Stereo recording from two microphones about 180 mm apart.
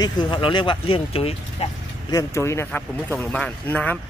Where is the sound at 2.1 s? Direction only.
15° left (ahead or behind).